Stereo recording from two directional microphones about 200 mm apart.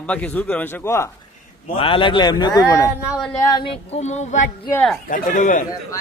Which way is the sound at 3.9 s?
35° left (ahead or behind).